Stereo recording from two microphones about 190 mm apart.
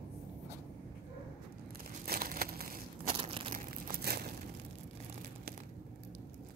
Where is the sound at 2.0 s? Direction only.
55° right (ahead or behind).